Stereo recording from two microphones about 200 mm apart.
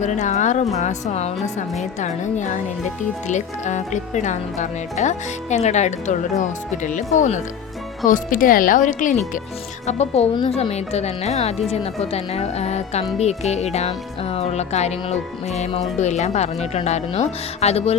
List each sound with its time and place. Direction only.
0.0 s speech: 35° left (ahead or behind)